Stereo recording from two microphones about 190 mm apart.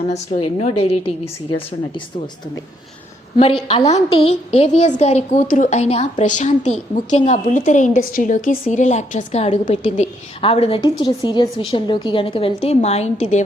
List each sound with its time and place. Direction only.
0.1 s a woman's voice: 30° left (ahead or behind)
3.3 s a woman's voice: 30° left (ahead or behind)